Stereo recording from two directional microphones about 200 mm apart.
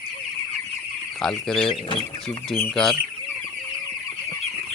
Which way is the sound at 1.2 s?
5° left (ahead or behind).